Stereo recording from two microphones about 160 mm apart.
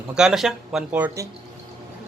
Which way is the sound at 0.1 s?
5° right (ahead or behind).